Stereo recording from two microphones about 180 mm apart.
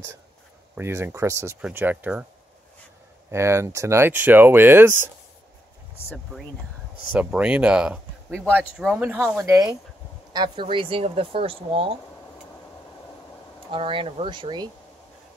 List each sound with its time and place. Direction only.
0.7 s speech: 15° right (ahead or behind)
3.3 s speech: 15° right (ahead or behind)
7.2 s speech: 5° right (ahead or behind)
9.4 s speech: 20° right (ahead or behind)
13.7 s speech: 30° right (ahead or behind)